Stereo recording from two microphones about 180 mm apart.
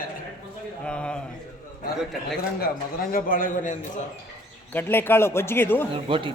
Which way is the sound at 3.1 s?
50° left (ahead or behind).